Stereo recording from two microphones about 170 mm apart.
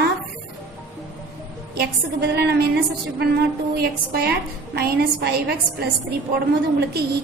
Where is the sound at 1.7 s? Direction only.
70° right (ahead or behind).